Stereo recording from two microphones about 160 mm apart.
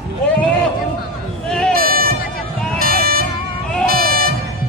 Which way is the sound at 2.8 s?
70° right (ahead or behind).